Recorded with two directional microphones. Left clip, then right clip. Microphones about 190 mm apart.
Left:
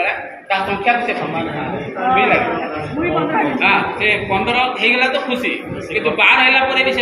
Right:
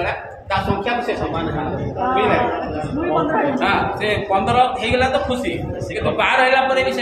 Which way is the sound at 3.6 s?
25° right (ahead or behind).